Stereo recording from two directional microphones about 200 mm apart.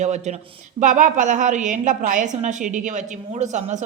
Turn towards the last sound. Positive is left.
turn(degrees=-35)  # may be behind; listen again after turning